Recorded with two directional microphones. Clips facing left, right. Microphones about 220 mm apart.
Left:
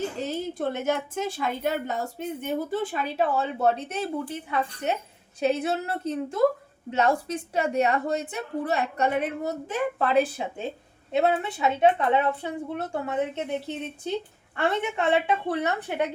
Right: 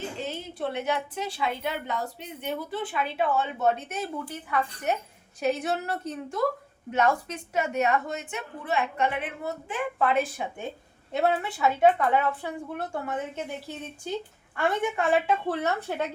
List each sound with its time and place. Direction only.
0.2 s a woman's voice: 40° left (ahead or behind)
11.1 s a woman's voice: 20° left (ahead or behind)